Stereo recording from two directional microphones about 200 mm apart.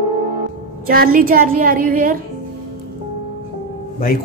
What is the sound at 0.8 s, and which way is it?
A woman's voice, 45° right (ahead or behind).